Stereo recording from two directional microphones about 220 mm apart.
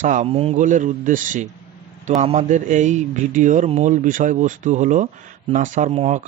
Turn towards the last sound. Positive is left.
turn(degrees=-30)  # may be behind; listen again after turning